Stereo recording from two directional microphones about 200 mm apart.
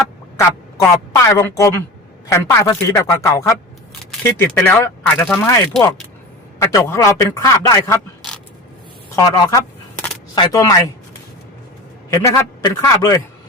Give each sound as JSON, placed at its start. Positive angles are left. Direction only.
{"t": 0.3, "sound": "a man's voice", "side_deg": 15}
{"t": 9.1, "sound": "single-lens reflex camera", "side_deg": 15}
{"t": 10.4, "sound": "speech", "side_deg": 15}
{"t": 12.1, "sound": "speech", "side_deg": 15}